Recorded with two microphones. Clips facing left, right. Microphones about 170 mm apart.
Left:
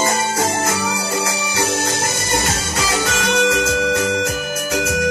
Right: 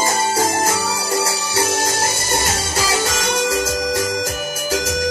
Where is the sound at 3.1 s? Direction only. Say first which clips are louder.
Left 2 dB; 70° left (ahead or behind).